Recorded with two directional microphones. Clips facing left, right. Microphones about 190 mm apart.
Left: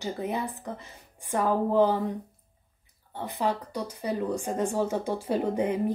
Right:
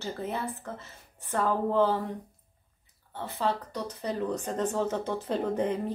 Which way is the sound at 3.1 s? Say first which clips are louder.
Left 1 dB; 15° left (ahead or behind).